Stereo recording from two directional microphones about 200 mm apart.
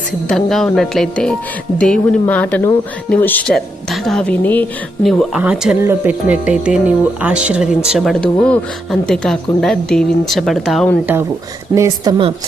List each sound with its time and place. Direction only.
0.3 s speech: centre (ahead or behind)
5.3 s speech: 5° right (ahead or behind)
11.7 s a woman's voice: 15° right (ahead or behind)